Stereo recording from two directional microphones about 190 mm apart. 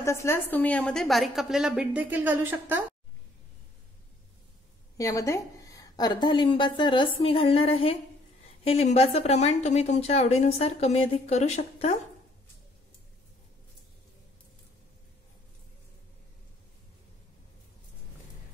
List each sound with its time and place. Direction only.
0.0 s a woman's voice: 15° left (ahead or behind); by 2.8 s 10° right (ahead or behind)
4.9 s a woman's voice: 15° left (ahead or behind); by 11.9 s 35° left (ahead or behind)